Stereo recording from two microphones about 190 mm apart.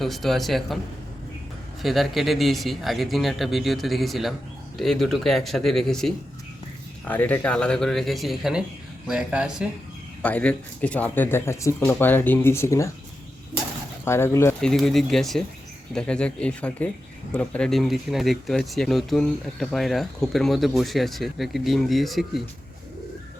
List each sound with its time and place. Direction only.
0.0 s speech: centre (ahead or behind)
1.8 s speech: centre (ahead or behind)
10.2 s speech: 5° left (ahead or behind)
14.0 s speech: 15° left (ahead or behind)
14.6 s speech: centre (ahead or behind)